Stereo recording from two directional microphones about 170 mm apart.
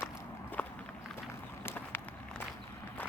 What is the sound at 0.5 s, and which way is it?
Walk, 10° left (ahead or behind).